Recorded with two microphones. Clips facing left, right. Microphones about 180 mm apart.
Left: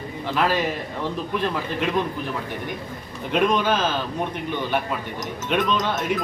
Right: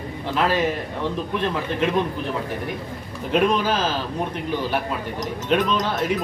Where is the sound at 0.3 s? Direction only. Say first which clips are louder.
Right 1 dB; centre (ahead or behind).